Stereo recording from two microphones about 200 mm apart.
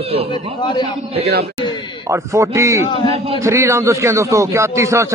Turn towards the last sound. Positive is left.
turn(degrees=-15)  # may be behind; listen again after turning